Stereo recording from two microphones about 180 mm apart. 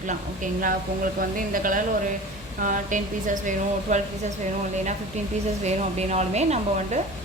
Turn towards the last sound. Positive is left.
turn(degrees=-40)  # may be behind; listen again after turning